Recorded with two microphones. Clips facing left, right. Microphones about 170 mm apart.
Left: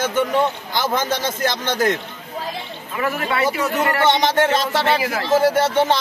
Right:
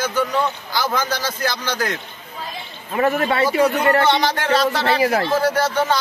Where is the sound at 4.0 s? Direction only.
20° left (ahead or behind).